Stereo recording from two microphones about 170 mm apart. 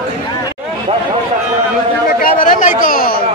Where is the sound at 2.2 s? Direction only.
50° left (ahead or behind).